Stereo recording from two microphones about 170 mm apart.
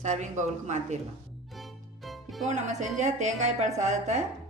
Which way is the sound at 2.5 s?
45° right (ahead or behind).